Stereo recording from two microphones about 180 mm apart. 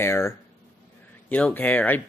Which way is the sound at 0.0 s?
15° left (ahead or behind).